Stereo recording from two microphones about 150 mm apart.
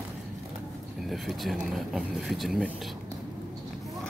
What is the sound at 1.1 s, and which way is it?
Speech, centre (ahead or behind).